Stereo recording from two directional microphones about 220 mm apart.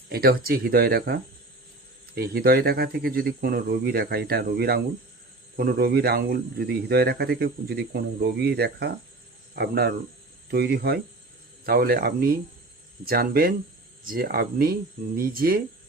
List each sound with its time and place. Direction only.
0.1 s speech: 45° right (ahead or behind)